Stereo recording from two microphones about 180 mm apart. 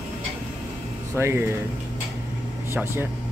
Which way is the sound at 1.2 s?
15° right (ahead or behind).